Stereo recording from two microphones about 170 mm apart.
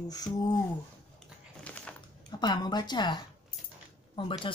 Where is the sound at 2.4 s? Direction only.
25° left (ahead or behind).